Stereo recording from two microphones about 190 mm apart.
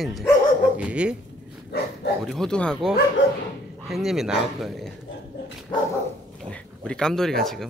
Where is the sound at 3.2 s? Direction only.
85° left.